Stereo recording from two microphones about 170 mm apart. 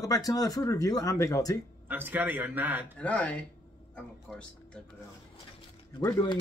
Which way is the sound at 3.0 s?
10° left (ahead or behind).